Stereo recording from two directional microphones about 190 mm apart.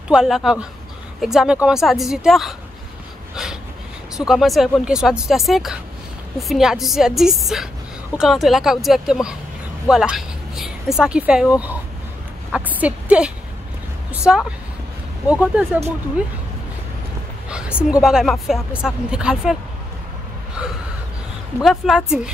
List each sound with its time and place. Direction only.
0.1 s speech: centre (ahead or behind)
4.2 s speech: centre (ahead or behind)
12.5 s a woman's voice: 5° right (ahead or behind)
17.5 s a woman's voice: 5° right (ahead or behind)
21.5 s speech: centre (ahead or behind)